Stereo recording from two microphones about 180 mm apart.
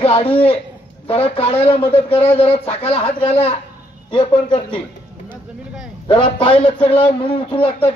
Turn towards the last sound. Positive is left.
turn(degrees=30)  # may be behind; listen again after turning